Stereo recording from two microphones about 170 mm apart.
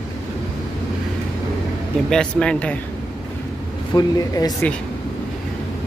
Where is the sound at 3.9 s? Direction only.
20° left (ahead or behind).